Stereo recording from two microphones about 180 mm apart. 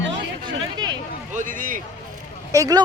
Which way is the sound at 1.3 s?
45° right (ahead or behind).